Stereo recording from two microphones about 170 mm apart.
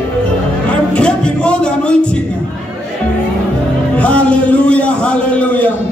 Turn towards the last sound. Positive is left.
turn(degrees=10)  # may be behind; listen again after turning